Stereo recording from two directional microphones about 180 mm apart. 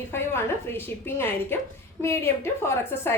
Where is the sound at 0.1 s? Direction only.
15° left (ahead or behind).